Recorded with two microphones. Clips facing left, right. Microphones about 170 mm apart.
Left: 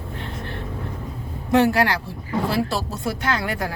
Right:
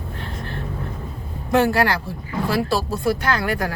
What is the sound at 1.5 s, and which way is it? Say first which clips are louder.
Speech: even; 20° left (ahead or behind).